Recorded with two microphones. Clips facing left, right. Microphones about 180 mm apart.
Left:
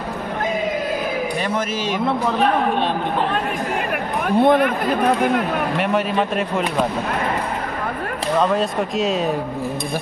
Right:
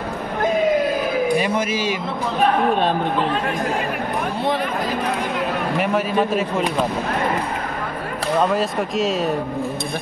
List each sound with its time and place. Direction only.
1.4 s speech: 10° right (ahead or behind)
4.4 s speech: 55° left (ahead or behind)
5.8 s speech: centre (ahead or behind)
8.5 s speech: centre (ahead or behind)